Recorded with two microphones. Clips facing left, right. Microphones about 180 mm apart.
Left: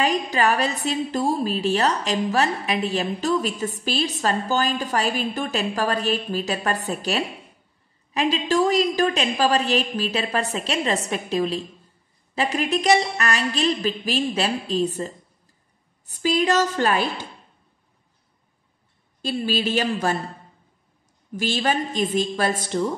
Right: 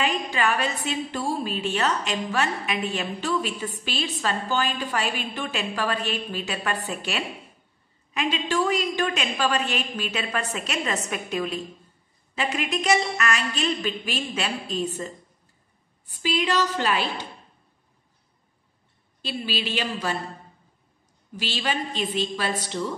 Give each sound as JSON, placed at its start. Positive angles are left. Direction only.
{"t": 0.0, "sound": "a woman's voice", "side_deg": 40}
{"t": 19.2, "sound": "a woman's voice", "side_deg": 45}
{"t": 21.4, "sound": "a woman's voice", "side_deg": 45}